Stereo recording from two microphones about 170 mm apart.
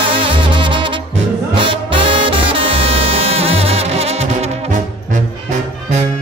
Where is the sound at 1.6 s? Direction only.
30° right (ahead or behind).